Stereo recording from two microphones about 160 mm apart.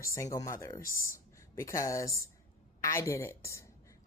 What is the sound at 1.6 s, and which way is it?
Speech, 20° left (ahead or behind).